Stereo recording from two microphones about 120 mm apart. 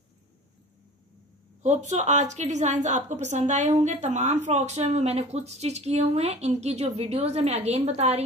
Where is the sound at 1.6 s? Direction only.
80° right.